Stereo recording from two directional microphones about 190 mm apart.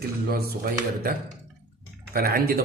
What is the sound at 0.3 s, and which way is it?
Speech, 50° right (ahead or behind).